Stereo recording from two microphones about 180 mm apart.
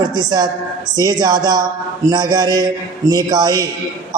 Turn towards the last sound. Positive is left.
turn(degrees=-20)  # may be behind; listen again after turning